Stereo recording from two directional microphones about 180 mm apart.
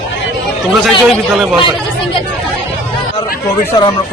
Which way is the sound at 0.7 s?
Centre (ahead or behind).